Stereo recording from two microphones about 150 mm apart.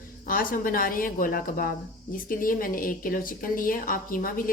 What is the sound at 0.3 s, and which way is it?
Speech, 70° left (ahead or behind).